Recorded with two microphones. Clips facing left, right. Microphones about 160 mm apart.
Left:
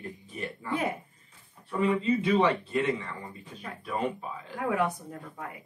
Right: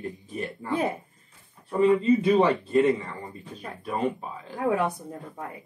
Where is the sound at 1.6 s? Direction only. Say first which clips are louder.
Right 6 dB; 35° right (ahead or behind).